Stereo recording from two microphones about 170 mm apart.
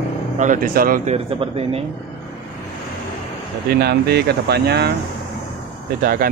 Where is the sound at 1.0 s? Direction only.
35° right (ahead or behind).